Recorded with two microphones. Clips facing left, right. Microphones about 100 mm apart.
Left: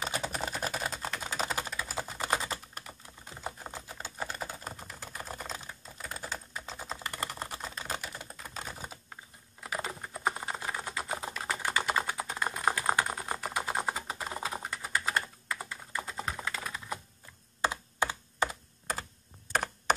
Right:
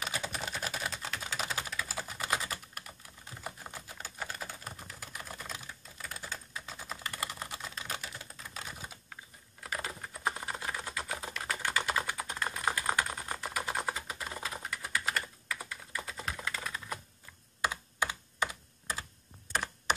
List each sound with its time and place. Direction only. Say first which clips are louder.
0.0 s typing: left 3 dB; 35° left (ahead or behind)
8.0 s typing: left 3 dB; 50° left (ahead or behind)
8.5 s typing: left 3 dB; 35° left (ahead or behind)
9.6 s typing: left 2 dB; 15° left (ahead or behind)
11.1 s typing: left 3 dB; 30° left (ahead or behind)
11.7 s typing: left 3 dB; centre (ahead or behind)
12.1 s typing: left 2 dB; 15° left (ahead or behind)
12.6 s typing: left 3 dB; 30° left (ahead or behind)
13.7 s computer keyboard: left 3 dB; 30° left (ahead or behind)
16.3 s typing: left 1 dB; 20° left (ahead or behind)
17.6 s computer keyboard: left 3 dB; 30° left (ahead or behind)